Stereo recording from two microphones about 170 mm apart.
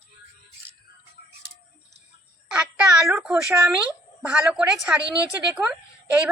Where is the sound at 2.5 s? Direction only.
10° right (ahead or behind).